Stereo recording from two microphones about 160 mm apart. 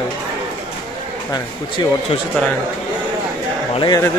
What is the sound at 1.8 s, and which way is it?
Speech, 30° left (ahead or behind).